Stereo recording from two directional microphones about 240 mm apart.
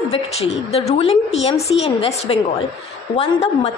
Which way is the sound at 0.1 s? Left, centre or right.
Left.